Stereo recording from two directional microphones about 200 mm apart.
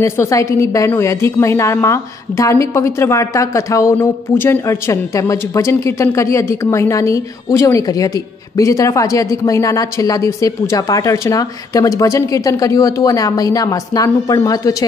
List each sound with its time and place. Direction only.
0.0 s a woman's voice: 15° left (ahead or behind)